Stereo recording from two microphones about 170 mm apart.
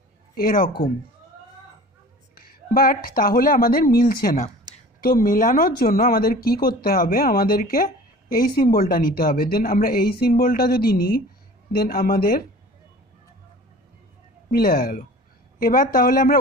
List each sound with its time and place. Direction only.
0.3 s speech: 60° left (ahead or behind)
2.3 s speech: 60° left (ahead or behind)
14.5 s speech: 60° left (ahead or behind)